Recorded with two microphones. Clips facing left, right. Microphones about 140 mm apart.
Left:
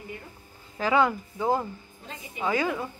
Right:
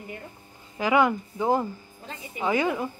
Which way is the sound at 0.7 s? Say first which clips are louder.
Right 2 dB; 15° right (ahead or behind).